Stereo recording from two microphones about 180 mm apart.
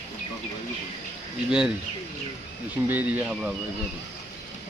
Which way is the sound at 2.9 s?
10° right (ahead or behind).